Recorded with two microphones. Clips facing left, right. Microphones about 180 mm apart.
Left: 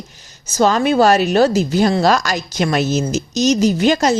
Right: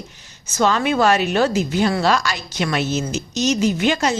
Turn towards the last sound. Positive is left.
turn(degrees=40)  # may be behind; listen again after turning